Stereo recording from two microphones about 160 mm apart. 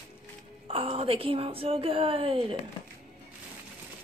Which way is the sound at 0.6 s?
35° right (ahead or behind).